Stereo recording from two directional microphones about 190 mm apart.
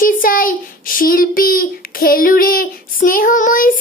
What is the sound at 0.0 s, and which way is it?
Child singing, 45° left (ahead or behind).